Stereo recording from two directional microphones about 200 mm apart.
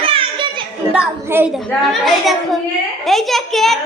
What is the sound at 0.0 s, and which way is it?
Children playing, 25° right (ahead or behind).